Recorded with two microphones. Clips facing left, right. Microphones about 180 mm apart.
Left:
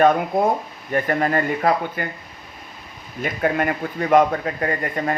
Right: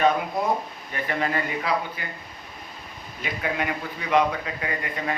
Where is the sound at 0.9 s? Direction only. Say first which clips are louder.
Left 7 dB; 45° left (ahead or behind).